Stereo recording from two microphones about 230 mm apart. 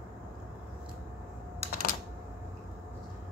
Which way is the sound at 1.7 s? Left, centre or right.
Left.